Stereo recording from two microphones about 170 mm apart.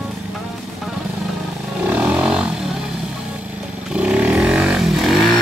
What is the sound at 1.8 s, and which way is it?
Roaring cats, 10° right (ahead or behind).